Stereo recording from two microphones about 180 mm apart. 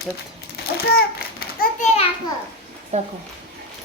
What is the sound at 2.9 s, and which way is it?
Speech, 40° right (ahead or behind).